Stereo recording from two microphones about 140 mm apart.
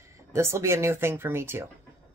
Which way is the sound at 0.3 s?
20° right (ahead or behind).